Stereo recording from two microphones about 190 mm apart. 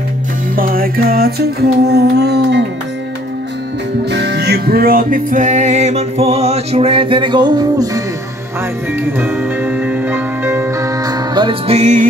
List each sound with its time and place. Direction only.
0.6 s music: 50° right (ahead or behind)
4.1 s music: 60° right (ahead or behind); by 8.0 s 20° right (ahead or behind)
9.0 s music: 10° right (ahead or behind); by 12.1 s 40° right (ahead or behind)